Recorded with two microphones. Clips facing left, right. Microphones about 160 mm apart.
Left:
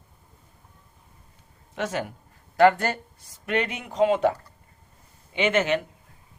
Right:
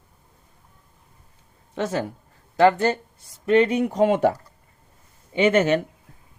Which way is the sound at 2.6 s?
20° right (ahead or behind).